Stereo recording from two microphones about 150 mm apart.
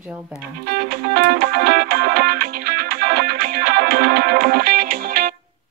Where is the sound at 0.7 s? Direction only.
90° right.